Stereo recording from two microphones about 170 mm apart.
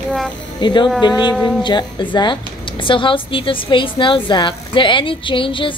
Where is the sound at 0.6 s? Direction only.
25° left (ahead or behind).